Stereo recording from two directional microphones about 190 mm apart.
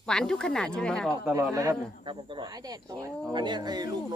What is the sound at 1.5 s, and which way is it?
Speech, 15° right (ahead or behind).